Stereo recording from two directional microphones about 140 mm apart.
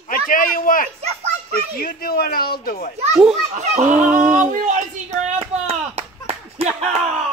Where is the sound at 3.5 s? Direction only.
55° right (ahead or behind).